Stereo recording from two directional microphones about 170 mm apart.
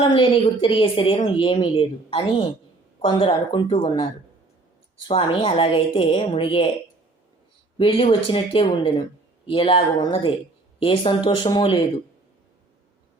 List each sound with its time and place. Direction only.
0.0 s a woman's voice: 30° left (ahead or behind)
5.0 s a woman's voice: 30° left (ahead or behind)
7.8 s a woman's voice: 30° left (ahead or behind)